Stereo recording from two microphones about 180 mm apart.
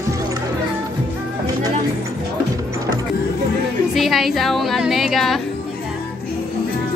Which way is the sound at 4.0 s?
Centre (ahead or behind).